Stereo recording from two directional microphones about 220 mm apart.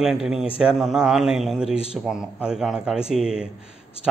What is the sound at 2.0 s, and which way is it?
A man's voice, 5° right (ahead or behind).